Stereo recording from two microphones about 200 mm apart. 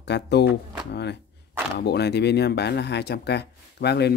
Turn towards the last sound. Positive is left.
turn(degrees=55)  # may be behind; listen again after turning